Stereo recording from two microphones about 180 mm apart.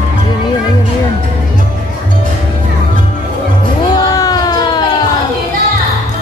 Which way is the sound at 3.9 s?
20° left (ahead or behind).